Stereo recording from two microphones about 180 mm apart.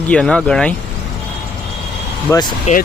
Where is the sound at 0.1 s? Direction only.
5° left (ahead or behind).